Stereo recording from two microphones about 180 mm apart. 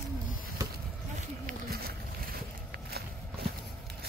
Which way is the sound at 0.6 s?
15° right (ahead or behind).